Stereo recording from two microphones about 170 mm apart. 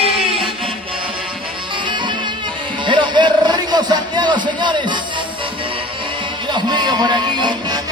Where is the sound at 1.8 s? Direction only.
30° right (ahead or behind).